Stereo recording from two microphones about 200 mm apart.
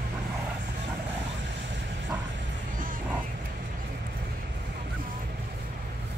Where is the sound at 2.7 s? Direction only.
45° right (ahead or behind).